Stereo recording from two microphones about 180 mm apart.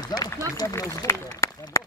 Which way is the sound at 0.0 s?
20° left (ahead or behind).